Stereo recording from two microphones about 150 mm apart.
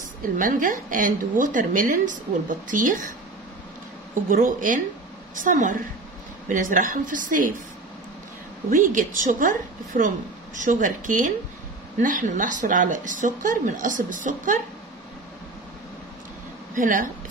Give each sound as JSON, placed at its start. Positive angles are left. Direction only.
{"t": 0.4, "sound": "a woman's voice", "side_deg": -65}
{"t": 4.3, "sound": "a woman's voice", "side_deg": -65}
{"t": 8.6, "sound": "a woman's voice", "side_deg": -65}
{"t": 16.7, "sound": "a woman's voice", "side_deg": -60}